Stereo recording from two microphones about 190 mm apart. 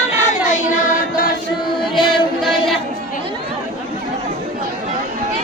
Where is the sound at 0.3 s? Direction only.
40° left (ahead or behind).